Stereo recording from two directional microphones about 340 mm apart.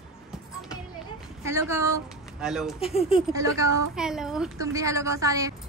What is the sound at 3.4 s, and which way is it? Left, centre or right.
A woman's voice, centre.